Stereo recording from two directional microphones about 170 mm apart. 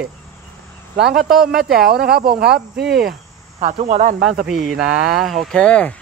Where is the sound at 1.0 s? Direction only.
70° right (ahead or behind).